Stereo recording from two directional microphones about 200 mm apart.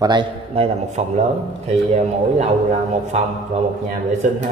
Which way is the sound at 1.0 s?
35° right (ahead or behind).